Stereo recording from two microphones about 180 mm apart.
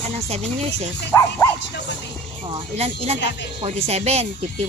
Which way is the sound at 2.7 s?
35° right (ahead or behind).